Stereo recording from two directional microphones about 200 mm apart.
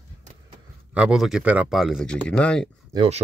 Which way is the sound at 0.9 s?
5° right (ahead or behind).